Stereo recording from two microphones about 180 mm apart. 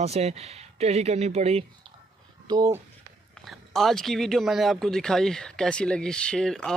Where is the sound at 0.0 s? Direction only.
35° right (ahead or behind).